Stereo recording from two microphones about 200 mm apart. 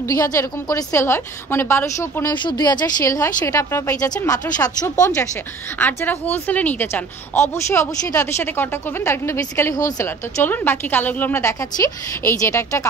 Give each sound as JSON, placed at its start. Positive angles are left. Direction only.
{"t": 0.0, "sound": "speech", "side_deg": 15}